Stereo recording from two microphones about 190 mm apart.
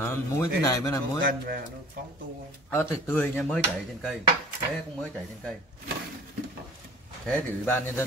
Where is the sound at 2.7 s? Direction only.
10° left (ahead or behind).